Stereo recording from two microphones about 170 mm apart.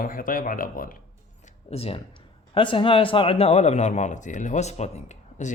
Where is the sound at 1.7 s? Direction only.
35° left (ahead or behind).